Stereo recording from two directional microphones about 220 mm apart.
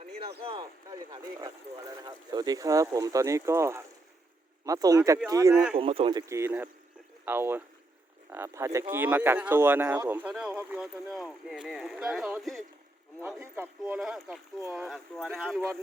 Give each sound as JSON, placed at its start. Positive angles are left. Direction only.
{"t": 0.4, "sound": "speech", "side_deg": -20}
{"t": 5.8, "sound": "speech", "side_deg": -25}